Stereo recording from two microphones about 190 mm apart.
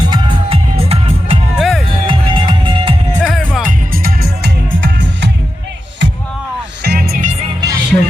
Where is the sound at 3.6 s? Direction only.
50° right (ahead or behind).